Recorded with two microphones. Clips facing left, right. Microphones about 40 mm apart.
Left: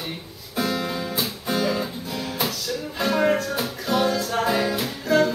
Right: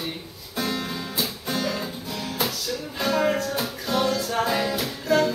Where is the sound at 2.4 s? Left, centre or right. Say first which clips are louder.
Even; centre.